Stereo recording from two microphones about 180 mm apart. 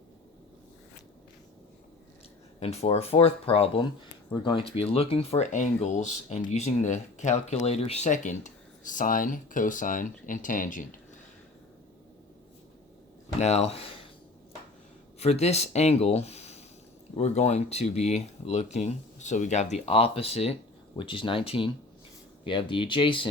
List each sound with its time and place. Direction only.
2.6 s speech: 35° left (ahead or behind)
13.4 s speech: 35° left (ahead or behind)
15.2 s speech: 35° left (ahead or behind)